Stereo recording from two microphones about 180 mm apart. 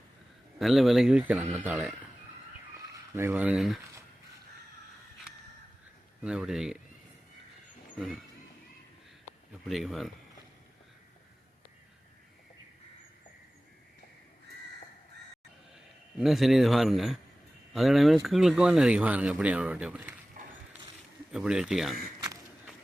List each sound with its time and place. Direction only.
0.6 s speech: centre (ahead or behind)
6.2 s speech: 5° right (ahead or behind)
7.9 s speech: centre (ahead or behind)
9.6 s speech: centre (ahead or behind)
16.1 s speech: centre (ahead or behind)
20.4 s a sound: 50° right (ahead or behind)
21.3 s speech: 5° right (ahead or behind)